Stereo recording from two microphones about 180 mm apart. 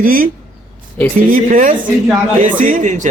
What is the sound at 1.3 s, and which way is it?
A man's voice, 45° right (ahead or behind).